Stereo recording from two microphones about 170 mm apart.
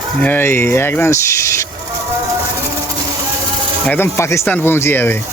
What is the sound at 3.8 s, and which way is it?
Speech, 15° left (ahead or behind).